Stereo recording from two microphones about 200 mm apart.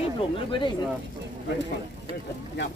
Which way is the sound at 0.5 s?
25° left (ahead or behind).